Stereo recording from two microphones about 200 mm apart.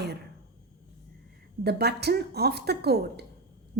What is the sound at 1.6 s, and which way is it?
A woman's voice, 55° right (ahead or behind).